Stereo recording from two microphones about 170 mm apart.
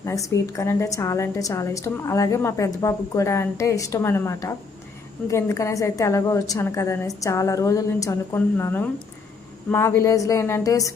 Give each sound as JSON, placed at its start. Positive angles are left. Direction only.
{"t": 0.0, "sound": "a woman's voice", "side_deg": 20}